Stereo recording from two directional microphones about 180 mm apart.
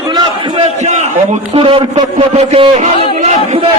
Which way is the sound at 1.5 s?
30° right (ahead or behind).